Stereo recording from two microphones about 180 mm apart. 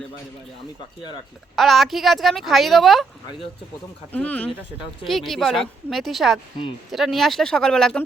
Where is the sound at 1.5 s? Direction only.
Centre (ahead or behind).